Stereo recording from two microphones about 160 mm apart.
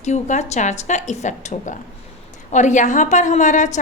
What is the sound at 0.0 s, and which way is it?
A woman's voice, 45° left (ahead or behind).